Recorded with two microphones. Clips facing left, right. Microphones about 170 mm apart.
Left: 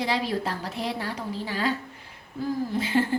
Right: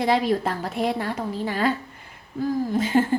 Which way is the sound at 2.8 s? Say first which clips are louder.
Right 4 dB; 45° right (ahead or behind).